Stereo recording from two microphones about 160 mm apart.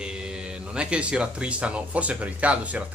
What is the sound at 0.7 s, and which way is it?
Speech, 5° right (ahead or behind).